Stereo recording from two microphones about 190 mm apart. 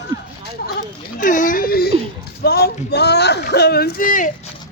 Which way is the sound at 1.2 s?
45° left (ahead or behind).